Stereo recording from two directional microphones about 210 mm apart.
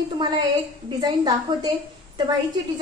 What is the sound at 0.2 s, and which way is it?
A woman's voice, 20° right (ahead or behind).